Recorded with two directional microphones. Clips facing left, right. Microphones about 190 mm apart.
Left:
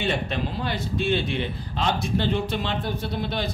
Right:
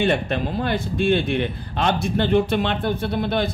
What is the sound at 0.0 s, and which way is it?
A man's voice, 55° right (ahead or behind).